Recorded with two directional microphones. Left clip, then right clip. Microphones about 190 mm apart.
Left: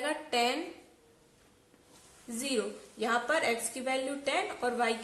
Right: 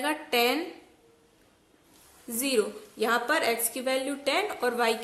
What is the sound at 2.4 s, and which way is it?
A woman's voice, 25° right (ahead or behind).